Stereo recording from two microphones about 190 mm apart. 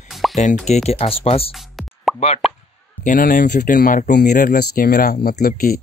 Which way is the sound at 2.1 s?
35° left (ahead or behind).